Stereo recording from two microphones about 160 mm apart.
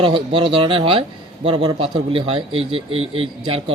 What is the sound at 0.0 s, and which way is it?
Speech, 30° right (ahead or behind).